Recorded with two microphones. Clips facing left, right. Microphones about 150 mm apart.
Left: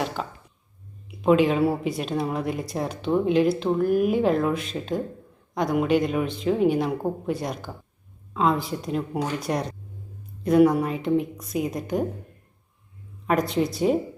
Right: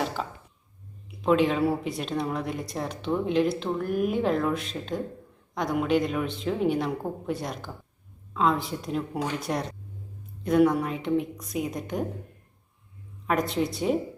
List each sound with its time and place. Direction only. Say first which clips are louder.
1.2 s speech: left 3 dB; 5° left (ahead or behind)
13.2 s speech: left 3 dB; centre (ahead or behind)